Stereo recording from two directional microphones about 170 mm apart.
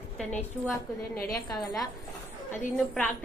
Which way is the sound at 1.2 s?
20° left (ahead or behind).